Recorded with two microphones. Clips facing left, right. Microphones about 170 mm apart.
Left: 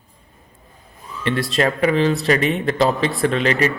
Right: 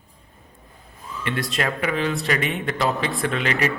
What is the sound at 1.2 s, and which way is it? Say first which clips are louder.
A man's voice: left 6 dB; 35° left (ahead or behind).